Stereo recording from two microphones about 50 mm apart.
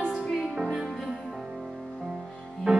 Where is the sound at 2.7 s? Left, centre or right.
Right.